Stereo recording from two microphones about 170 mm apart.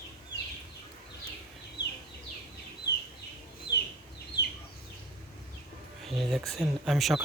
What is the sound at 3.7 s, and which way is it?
Chicken, 80° left.